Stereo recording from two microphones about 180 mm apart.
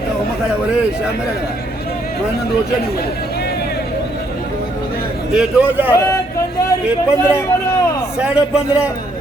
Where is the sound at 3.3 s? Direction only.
65° left (ahead or behind).